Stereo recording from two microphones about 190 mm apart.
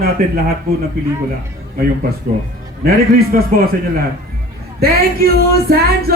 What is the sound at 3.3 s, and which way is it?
Speech, 50° right (ahead or behind).